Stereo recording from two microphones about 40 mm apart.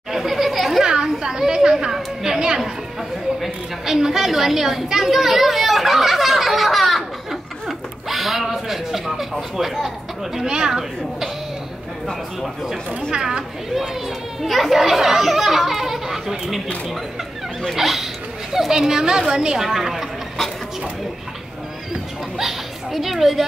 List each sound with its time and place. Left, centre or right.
0.1 s a sound: centre
0.8 s a sound: centre
2.0 s chatter: centre
3.3 s a sound: centre
9.6 s speech: centre
10.4 s speech: right
10.7 s speech: centre
13.1 s speech: right
13.7 s speech: centre
22.4 s a child's voice: centre